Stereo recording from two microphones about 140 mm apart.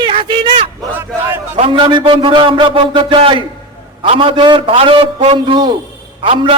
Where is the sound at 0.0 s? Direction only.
35° right (ahead or behind).